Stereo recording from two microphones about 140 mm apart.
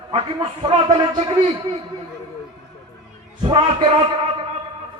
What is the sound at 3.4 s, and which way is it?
Speech, 35° right (ahead or behind).